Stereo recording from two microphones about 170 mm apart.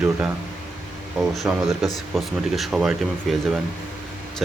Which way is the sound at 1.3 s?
Centre (ahead or behind).